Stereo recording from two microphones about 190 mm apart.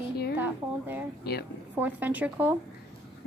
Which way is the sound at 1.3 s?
60° left (ahead or behind).